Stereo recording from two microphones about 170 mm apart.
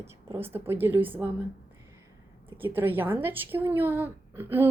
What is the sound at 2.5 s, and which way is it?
A woman's voice, 10° right (ahead or behind).